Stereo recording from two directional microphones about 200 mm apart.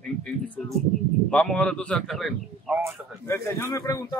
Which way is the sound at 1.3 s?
5° left (ahead or behind).